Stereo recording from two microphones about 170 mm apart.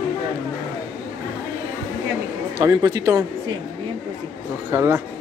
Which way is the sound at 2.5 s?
20° right (ahead or behind).